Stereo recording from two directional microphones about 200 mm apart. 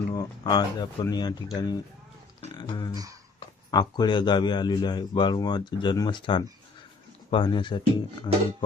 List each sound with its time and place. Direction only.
0.1 s speech: 20° left (ahead or behind)
2.9 s speech: 20° right (ahead or behind)
3.7 s speech: 20° left (ahead or behind)